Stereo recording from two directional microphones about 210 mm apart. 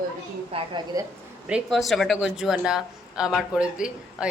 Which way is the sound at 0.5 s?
20° right (ahead or behind).